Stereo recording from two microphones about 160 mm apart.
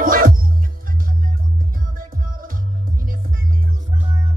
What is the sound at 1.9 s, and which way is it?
Music, 60° right (ahead or behind).